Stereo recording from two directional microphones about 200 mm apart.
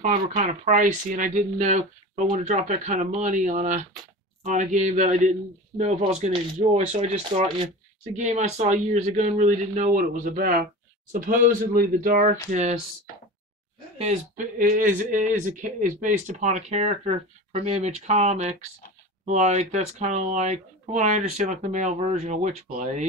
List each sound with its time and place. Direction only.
0.0 s speech: 40° right (ahead or behind)
13.9 s speech: 35° right (ahead or behind)